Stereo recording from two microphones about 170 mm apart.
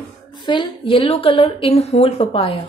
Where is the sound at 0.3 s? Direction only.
25° left (ahead or behind).